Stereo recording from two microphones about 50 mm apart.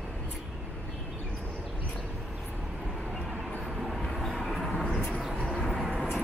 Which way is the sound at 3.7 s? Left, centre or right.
Centre.